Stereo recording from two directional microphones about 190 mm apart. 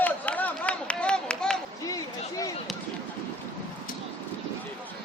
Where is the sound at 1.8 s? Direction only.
15° left (ahead or behind).